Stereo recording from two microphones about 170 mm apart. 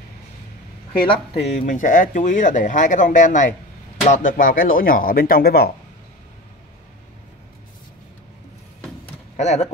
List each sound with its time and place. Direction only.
1.0 s speech: 35° left (ahead or behind)
1.6 s speech: 50° left (ahead or behind); by 5.7 s 65° left (ahead or behind)
9.4 s speech: 40° left (ahead or behind)